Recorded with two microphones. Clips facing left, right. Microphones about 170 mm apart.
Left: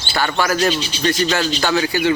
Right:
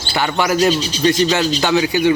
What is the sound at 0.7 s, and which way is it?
Speech, 40° right (ahead or behind).